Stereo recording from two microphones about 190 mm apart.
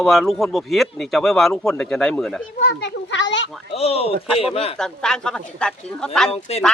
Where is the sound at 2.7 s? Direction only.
65° left (ahead or behind).